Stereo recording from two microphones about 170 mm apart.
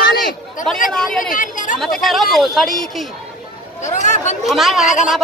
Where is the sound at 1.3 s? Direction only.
50° left (ahead or behind).